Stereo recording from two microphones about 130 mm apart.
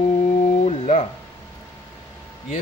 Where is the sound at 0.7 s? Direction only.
55° left (ahead or behind).